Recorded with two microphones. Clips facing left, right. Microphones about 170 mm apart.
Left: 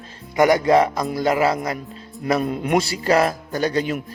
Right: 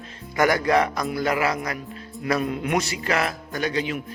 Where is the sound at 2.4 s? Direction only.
40° left (ahead or behind).